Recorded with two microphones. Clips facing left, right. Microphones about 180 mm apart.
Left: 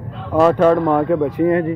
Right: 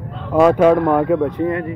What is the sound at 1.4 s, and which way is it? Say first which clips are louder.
Speech: left 5 dB; 25° left (ahead or behind).